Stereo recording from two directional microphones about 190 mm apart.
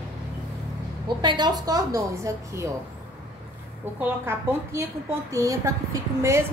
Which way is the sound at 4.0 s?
15° right (ahead or behind).